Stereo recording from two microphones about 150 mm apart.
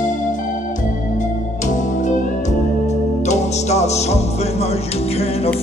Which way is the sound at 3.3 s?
50° left (ahead or behind).